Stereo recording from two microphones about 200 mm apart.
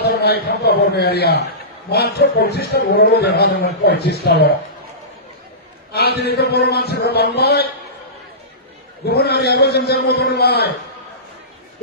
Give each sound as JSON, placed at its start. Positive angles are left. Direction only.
{"t": 0.0, "sound": "a man's voice", "side_deg": 55}
{"t": 5.9, "sound": "a man's voice", "side_deg": 55}
{"t": 9.0, "sound": "a man's voice", "side_deg": 55}